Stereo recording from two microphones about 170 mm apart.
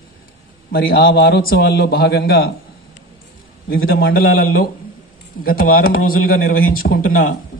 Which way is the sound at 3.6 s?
65° left (ahead or behind).